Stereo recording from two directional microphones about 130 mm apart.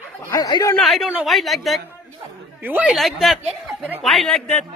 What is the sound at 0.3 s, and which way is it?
Speech, 30° left (ahead or behind).